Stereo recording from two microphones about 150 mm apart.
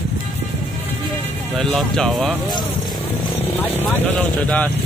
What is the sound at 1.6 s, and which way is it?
Speech, 5° left (ahead or behind).